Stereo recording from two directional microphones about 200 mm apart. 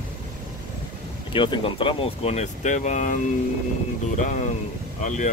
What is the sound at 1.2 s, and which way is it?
Speech, 25° left (ahead or behind).